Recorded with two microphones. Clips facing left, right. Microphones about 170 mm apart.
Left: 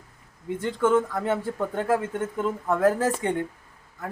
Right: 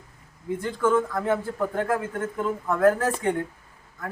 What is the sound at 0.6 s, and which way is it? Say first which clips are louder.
Speech: left 1 dB; 20° left (ahead or behind).